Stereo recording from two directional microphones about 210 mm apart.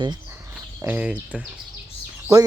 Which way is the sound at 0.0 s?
20° right (ahead or behind).